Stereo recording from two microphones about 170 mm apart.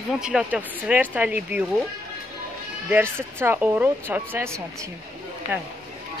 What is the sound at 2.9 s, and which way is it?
Speech, 15° right (ahead or behind).